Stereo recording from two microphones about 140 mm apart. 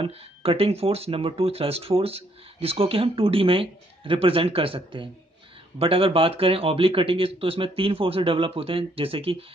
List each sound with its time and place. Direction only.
0.0 s speech: 45° right (ahead or behind)